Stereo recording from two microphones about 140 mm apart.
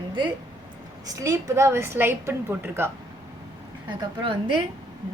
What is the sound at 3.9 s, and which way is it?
Speech, 35° right (ahead or behind).